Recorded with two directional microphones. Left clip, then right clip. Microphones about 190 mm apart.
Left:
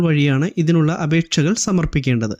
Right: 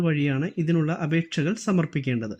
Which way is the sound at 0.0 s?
30° left (ahead or behind).